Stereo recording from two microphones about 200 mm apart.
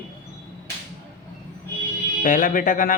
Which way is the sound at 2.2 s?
40° left (ahead or behind).